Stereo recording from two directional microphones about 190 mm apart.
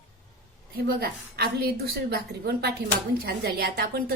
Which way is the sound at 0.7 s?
55° right (ahead or behind).